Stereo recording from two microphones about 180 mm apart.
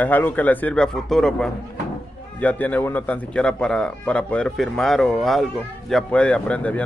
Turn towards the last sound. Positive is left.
turn(degrees=5)  # may be behind; listen again after turning